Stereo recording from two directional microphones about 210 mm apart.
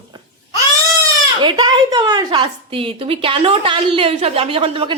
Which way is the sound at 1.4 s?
20° right (ahead or behind).